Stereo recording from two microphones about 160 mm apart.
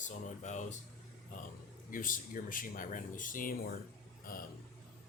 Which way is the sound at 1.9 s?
55° left (ahead or behind).